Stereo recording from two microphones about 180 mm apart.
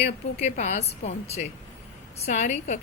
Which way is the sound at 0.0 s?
40° left (ahead or behind).